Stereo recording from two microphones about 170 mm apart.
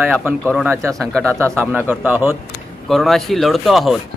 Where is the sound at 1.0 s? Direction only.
5° left (ahead or behind).